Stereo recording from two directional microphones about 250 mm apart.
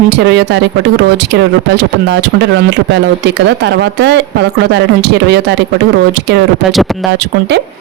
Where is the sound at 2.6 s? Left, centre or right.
Right.